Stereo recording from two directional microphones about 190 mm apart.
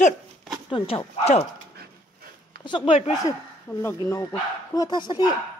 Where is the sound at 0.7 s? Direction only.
25° left (ahead or behind).